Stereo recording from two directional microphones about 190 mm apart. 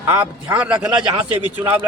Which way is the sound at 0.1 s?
10° right (ahead or behind).